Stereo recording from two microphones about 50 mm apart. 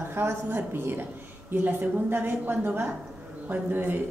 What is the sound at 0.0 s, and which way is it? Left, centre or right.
A woman's voice, right.